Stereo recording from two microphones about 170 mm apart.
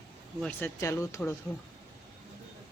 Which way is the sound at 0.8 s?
20° left (ahead or behind).